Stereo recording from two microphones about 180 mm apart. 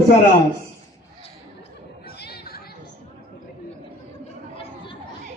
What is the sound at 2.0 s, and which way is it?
Chatter, 65° left (ahead or behind).